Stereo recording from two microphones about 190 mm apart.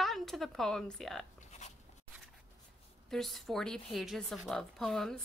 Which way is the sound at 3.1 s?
Centre (ahead or behind).